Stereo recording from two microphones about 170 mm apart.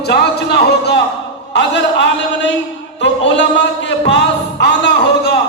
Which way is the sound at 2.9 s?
90° left.